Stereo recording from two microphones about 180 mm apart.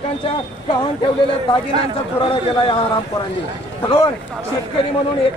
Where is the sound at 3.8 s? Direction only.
30° left (ahead or behind).